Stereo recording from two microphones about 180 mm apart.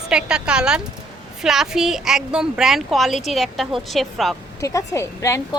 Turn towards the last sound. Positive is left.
turn(degrees=15)  # may be behind; listen again after turning